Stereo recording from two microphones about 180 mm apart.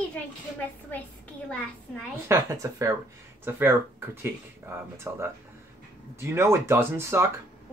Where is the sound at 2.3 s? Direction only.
15° right (ahead or behind).